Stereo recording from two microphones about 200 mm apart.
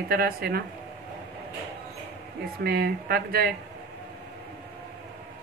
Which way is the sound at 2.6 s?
50° right (ahead or behind).